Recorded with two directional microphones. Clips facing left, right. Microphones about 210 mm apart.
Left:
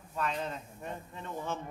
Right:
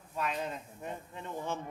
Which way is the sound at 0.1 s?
10° right (ahead or behind).